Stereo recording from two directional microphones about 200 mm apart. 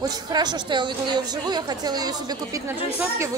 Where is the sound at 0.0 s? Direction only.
20° right (ahead or behind).